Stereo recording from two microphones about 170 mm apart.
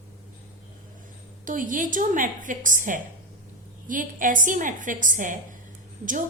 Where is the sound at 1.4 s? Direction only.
50° right (ahead or behind).